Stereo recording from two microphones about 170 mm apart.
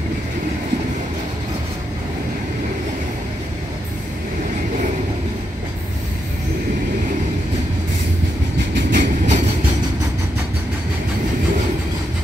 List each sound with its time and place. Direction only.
8.9 s train: 50° right (ahead or behind)